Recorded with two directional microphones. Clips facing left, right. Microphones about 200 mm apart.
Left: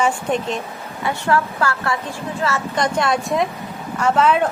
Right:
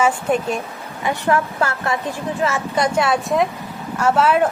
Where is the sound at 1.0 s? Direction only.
20° right (ahead or behind).